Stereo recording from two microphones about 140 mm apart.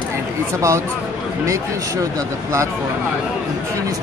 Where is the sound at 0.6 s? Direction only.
20° right (ahead or behind).